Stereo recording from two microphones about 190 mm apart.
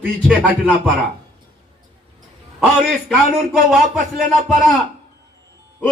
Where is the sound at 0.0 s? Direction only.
10° right (ahead or behind).